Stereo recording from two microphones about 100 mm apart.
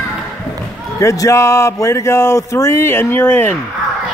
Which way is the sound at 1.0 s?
30° left (ahead or behind).